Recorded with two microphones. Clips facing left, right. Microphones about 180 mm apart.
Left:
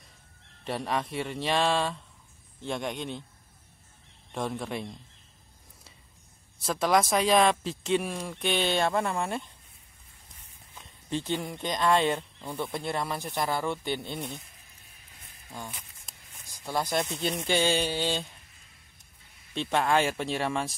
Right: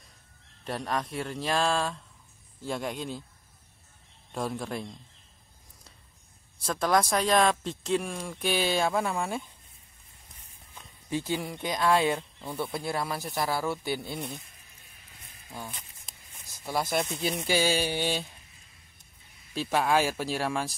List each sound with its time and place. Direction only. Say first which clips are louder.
0.7 s speech: left 1 dB; centre (ahead or behind)
4.3 s speech: even; centre (ahead or behind)
6.6 s speech: left 1 dB; centre (ahead or behind)
11.1 s speech: even; 10° right (ahead or behind)
15.7 s a sound: even; 10° left (ahead or behind)
16.9 s speech: even; 5° right (ahead or behind)
19.5 s speech: even; 5° right (ahead or behind)